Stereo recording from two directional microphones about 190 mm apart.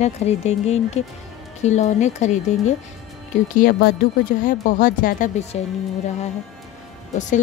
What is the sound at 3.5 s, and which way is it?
A woman's voice, 50° left (ahead or behind).